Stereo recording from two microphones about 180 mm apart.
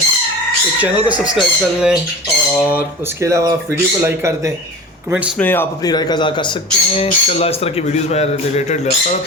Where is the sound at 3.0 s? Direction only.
15° right (ahead or behind).